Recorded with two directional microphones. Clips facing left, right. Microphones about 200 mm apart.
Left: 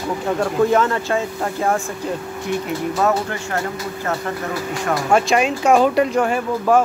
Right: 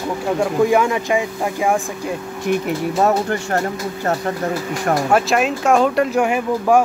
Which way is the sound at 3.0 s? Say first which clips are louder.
Right 3 dB; 40° right (ahead or behind).